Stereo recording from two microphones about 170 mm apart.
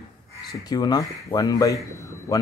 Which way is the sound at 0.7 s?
25° left (ahead or behind).